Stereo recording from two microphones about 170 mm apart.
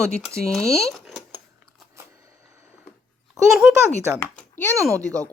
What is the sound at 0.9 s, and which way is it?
Speech, centre (ahead or behind).